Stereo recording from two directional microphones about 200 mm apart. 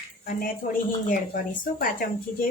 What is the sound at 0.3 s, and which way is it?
Speech, 45° left (ahead or behind).